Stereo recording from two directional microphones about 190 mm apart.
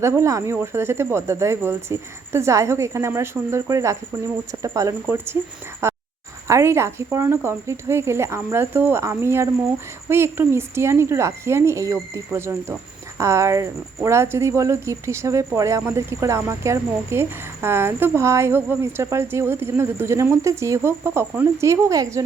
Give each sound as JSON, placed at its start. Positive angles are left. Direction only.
{"t": 0.0, "sound": "a woman's voice", "side_deg": -15}
{"t": 5.8, "sound": "a sound", "side_deg": -15}
{"t": 6.5, "sound": "a woman's voice", "side_deg": -15}